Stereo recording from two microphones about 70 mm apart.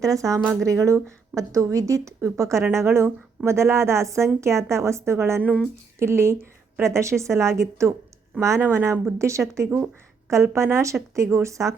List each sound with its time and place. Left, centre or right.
0.0 s a woman's voice: right
5.4 s speech: centre
6.0 s a woman's voice: right